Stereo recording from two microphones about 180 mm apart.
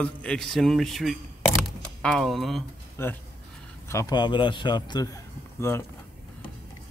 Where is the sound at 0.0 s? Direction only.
5° left (ahead or behind).